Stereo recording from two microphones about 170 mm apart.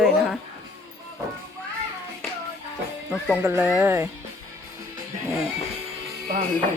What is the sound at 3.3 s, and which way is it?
Speech, 15° right (ahead or behind).